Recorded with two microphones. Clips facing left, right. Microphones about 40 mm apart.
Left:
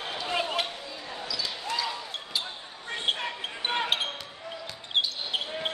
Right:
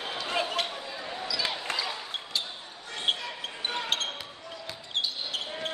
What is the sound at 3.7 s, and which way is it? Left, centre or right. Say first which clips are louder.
Basketball bounce: left 6 dB; left.